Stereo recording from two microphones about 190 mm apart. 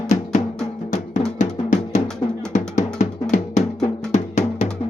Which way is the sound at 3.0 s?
40° left (ahead or behind).